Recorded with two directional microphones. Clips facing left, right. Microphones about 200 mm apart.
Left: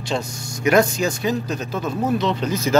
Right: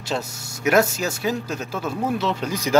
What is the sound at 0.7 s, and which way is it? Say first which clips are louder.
Speech: left 2 dB; 5° right (ahead or behind).